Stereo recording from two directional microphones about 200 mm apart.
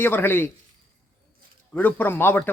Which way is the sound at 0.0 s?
10° left (ahead or behind).